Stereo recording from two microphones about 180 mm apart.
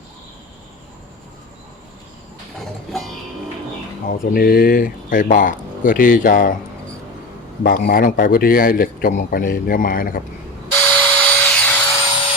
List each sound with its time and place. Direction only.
4.0 s speech: 50° left (ahead or behind)
7.6 s speech: 55° left (ahead or behind)
10.7 s a sound: 10° left (ahead or behind)